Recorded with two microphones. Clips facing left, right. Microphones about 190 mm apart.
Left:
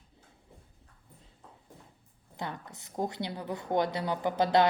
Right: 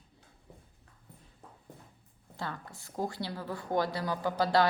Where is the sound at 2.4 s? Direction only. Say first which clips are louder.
Left 1 dB; 20° left (ahead or behind).